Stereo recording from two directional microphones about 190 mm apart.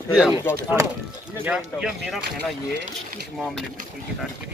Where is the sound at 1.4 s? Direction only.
5° right (ahead or behind).